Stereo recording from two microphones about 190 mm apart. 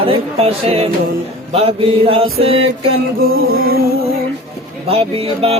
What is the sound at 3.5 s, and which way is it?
Music, 50° right (ahead or behind).